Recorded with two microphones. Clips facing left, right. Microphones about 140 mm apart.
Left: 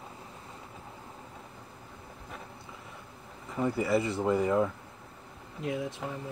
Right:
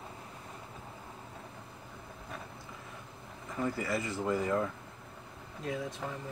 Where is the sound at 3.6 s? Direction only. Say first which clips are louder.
Left 6 dB; 25° left (ahead or behind).